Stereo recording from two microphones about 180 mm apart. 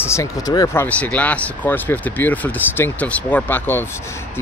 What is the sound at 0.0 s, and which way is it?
Speech, 15° left (ahead or behind).